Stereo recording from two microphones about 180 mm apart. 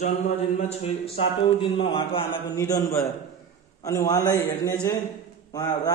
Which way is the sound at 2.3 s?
15° left (ahead or behind).